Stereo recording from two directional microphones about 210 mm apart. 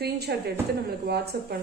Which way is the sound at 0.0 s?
50° right (ahead or behind).